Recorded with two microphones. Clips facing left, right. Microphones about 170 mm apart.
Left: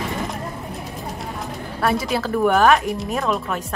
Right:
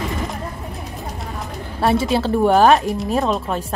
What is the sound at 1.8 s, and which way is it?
Speech, 25° right (ahead or behind).